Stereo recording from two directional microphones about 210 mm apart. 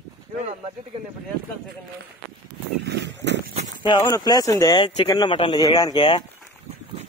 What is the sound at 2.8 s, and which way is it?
Pig, 55° right (ahead or behind).